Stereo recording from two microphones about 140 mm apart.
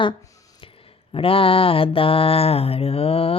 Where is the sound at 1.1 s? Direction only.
40° left (ahead or behind).